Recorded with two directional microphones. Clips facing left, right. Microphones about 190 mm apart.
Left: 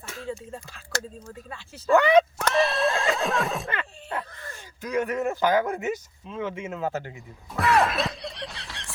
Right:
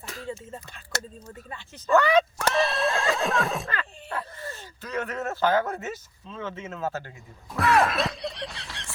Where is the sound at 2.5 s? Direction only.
Centre (ahead or behind).